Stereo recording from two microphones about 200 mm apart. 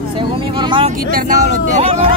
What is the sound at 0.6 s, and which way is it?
Speech, 25° right (ahead or behind).